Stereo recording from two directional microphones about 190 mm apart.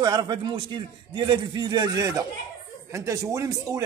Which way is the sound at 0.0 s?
20° right (ahead or behind).